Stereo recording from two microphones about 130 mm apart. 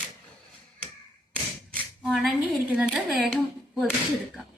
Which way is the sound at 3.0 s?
5° right (ahead or behind).